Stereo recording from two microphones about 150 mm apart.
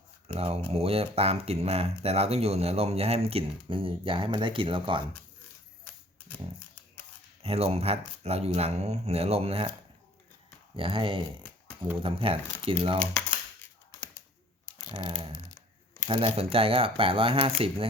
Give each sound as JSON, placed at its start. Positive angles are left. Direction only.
{"t": 0.3, "sound": "speech", "side_deg": -40}
{"t": 7.4, "sound": "speech", "side_deg": -40}
{"t": 10.8, "sound": "speech", "side_deg": -35}
{"t": 14.9, "sound": "speech", "side_deg": -35}